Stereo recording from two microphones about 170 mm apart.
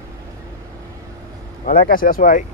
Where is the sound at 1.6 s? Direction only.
60° left (ahead or behind).